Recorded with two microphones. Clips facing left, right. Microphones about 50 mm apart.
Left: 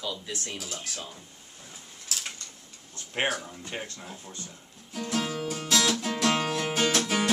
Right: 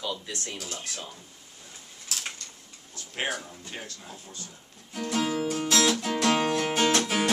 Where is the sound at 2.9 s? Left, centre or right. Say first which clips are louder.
Left 3 dB; left.